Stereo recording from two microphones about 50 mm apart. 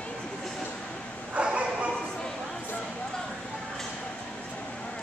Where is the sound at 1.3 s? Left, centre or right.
Right.